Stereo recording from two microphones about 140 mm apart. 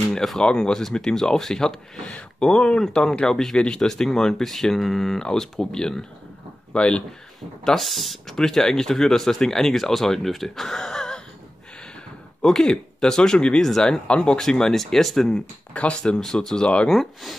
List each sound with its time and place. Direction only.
0.1 s speech: 5° left (ahead or behind)
12.4 s speech: 5° left (ahead or behind)